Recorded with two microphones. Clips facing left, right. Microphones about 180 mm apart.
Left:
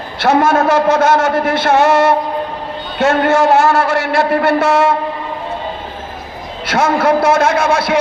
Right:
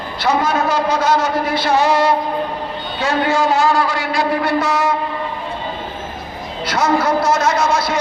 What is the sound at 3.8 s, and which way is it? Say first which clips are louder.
Speech: left 5 dB; 70° left (ahead or behind).